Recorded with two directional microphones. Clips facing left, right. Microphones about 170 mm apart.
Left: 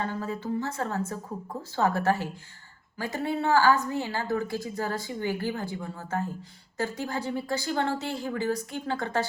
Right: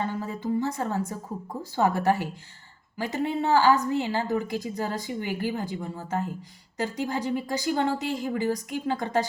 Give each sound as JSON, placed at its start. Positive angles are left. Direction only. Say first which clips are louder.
{"t": 0.0, "sound": "a woman's voice", "louder": "right 1 dB", "side_deg": -15}